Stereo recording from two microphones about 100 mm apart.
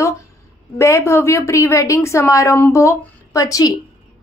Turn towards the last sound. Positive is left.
turn(degrees=35)  # may be behind; listen again after turning